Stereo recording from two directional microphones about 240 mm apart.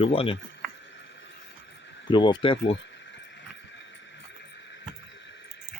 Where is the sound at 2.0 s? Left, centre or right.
Centre.